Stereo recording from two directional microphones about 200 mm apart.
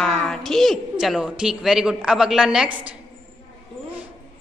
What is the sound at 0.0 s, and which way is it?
A woman's voice, centre (ahead or behind).